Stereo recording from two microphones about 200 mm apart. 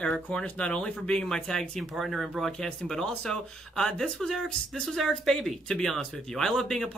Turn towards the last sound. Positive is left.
turn(degrees=0)  # may be behind; listen again after turning